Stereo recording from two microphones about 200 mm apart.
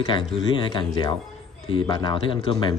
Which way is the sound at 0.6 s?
25° left (ahead or behind).